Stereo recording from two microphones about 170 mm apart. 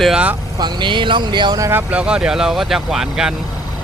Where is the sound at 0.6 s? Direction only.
25° right (ahead or behind).